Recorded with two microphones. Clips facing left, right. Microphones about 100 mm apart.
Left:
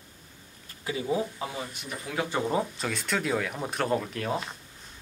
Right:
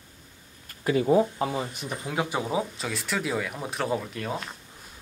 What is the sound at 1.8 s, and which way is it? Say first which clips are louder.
Speech: right 3 dB; 25° right (ahead or behind).